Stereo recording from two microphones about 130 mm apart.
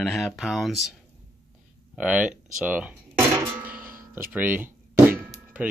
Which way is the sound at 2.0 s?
10° right (ahead or behind).